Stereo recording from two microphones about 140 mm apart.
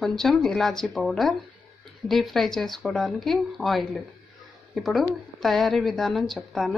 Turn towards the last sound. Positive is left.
turn(degrees=0)  # may be behind; listen again after turning